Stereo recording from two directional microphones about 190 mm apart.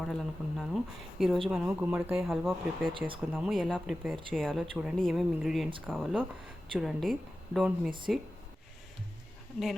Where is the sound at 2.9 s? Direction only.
25° right (ahead or behind).